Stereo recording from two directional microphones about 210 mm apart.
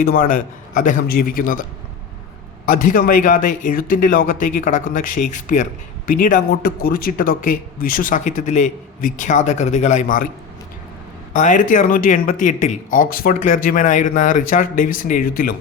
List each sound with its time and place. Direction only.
0.0 s speech: 40° left (ahead or behind)
2.6 s speech: 40° left (ahead or behind)
11.3 s speech: 35° left (ahead or behind)